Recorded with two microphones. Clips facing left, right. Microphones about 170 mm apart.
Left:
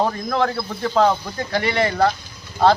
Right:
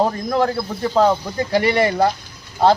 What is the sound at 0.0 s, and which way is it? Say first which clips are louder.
Speech: right 2 dB; 10° right (ahead or behind).